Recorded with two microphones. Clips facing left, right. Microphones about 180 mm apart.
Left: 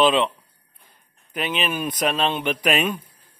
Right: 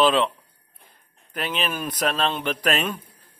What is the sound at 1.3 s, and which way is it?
A man's voice, 10° left (ahead or behind).